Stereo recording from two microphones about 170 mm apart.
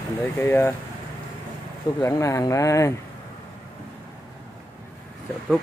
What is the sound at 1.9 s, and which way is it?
Speech, 20° left (ahead or behind).